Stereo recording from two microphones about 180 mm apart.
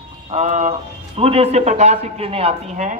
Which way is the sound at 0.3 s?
40° right (ahead or behind).